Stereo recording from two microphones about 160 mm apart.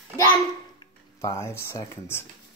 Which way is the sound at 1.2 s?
15° left (ahead or behind).